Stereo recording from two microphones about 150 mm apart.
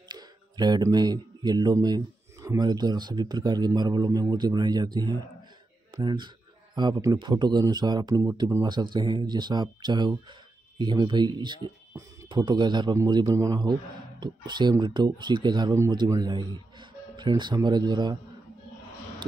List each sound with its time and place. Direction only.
0.1 s a man's voice: 30° right (ahead or behind)